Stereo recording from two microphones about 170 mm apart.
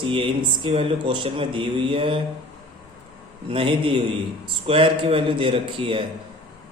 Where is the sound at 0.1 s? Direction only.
30° right (ahead or behind).